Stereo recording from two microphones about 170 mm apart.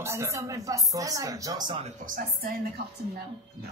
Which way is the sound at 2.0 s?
55° right (ahead or behind).